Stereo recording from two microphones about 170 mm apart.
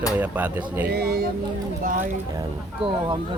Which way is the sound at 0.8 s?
65° right (ahead or behind).